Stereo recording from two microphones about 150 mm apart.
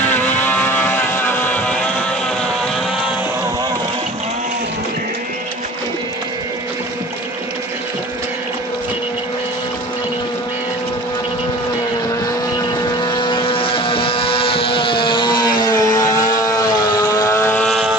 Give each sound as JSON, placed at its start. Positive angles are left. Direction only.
{"t": 0.1, "sound": "vehicle", "side_deg": 10}
{"t": 13.0, "sound": "vehicle", "side_deg": 30}
{"t": 17.6, "sound": "vehicle", "side_deg": 0}